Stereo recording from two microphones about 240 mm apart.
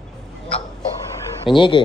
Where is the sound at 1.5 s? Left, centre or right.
Centre.